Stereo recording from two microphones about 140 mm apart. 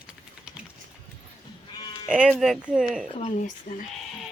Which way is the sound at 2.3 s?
Centre (ahead or behind).